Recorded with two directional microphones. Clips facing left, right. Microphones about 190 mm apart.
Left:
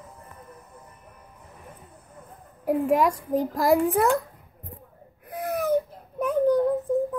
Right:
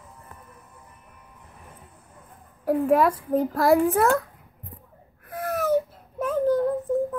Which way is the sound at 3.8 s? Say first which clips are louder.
Right 1 dB; 15° left (ahead or behind).